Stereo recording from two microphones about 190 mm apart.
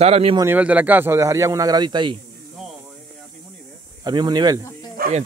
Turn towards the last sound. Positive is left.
turn(degrees=-50)  # may be behind; listen again after turning